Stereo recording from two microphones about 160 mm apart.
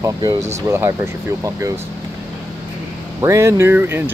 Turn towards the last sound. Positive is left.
turn(degrees=-15)  # may be behind; listen again after turning